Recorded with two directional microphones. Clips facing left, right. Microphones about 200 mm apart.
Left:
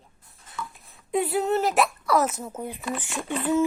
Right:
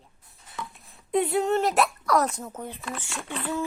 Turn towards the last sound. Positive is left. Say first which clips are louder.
# left 7 dB
turn(degrees=15)  # may be behind; listen again after turning